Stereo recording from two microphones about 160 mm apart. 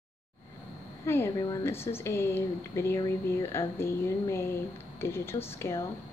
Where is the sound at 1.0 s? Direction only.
15° left (ahead or behind).